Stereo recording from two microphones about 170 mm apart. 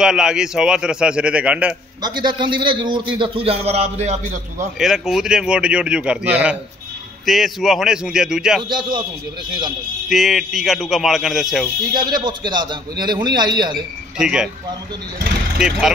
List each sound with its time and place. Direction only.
0.0 s a man's voice: 5° right (ahead or behind)
2.0 s a man's voice: 25° right (ahead or behind); by 4.6 s 40° right (ahead or behind)
4.7 s a man's voice: 5° right (ahead or behind)
8.6 s a man's voice: 25° right (ahead or behind)
10.0 s a man's voice: centre (ahead or behind)
11.9 s a man's voice: 25° right (ahead or behind)
14.1 s a man's voice: 5° right (ahead or behind)
15.6 s a man's voice: 5° right (ahead or behind)